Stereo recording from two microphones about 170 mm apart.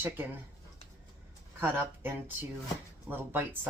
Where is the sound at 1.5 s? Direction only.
10° right (ahead or behind).